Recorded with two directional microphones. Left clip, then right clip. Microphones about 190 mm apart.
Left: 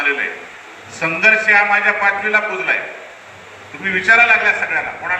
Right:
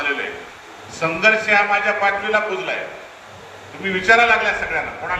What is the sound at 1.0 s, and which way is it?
A man's voice, 30° right (ahead or behind).